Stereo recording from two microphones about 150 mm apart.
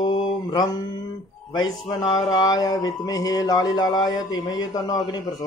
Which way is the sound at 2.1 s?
25° left (ahead or behind).